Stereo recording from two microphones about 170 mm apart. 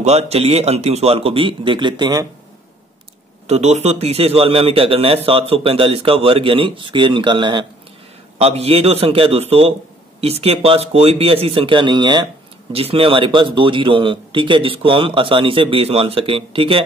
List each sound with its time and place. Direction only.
0.0 s a man's voice: 40° right (ahead or behind)
3.4 s a man's voice: 40° right (ahead or behind)